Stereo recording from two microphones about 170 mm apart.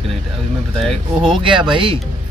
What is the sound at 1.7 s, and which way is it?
Speech, 30° right (ahead or behind).